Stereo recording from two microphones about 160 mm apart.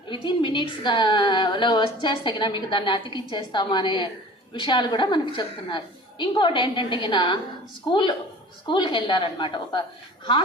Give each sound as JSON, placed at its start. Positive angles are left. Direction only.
{"t": 0.1, "sound": "a woman's voice", "side_deg": 30}